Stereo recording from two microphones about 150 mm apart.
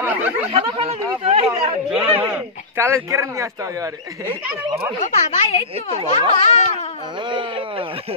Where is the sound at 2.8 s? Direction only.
20° right (ahead or behind).